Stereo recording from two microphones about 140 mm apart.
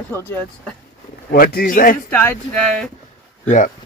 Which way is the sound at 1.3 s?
90° left.